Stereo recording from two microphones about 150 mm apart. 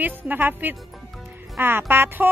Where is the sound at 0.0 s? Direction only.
10° right (ahead or behind).